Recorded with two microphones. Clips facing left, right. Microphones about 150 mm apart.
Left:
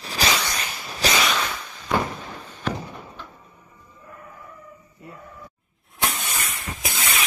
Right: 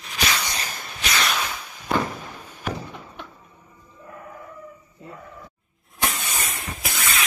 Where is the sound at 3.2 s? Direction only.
65° right (ahead or behind).